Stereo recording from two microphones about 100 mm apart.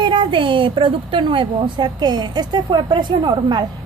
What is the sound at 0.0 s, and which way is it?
A woman's voice, 55° right (ahead or behind).